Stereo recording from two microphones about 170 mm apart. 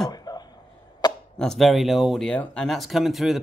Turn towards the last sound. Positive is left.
turn(degrees=0)  # may be behind; listen again after turning